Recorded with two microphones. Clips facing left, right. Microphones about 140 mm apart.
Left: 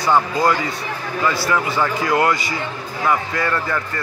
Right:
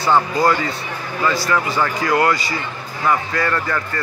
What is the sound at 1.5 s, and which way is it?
Speech, 15° left (ahead or behind).